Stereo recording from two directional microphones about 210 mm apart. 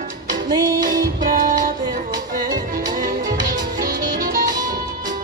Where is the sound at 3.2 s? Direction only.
20° right (ahead or behind).